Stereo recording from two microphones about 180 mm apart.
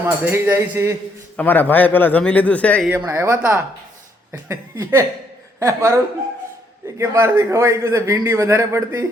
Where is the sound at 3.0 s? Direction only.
15° right (ahead or behind).